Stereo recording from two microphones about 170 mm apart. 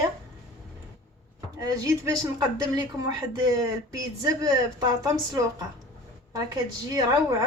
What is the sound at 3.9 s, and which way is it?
Speech, 20° right (ahead or behind).